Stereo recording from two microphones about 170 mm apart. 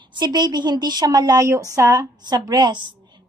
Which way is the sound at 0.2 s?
25° right (ahead or behind).